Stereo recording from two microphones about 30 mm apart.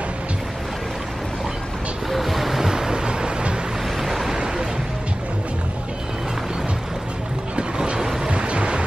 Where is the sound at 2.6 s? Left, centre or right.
Right.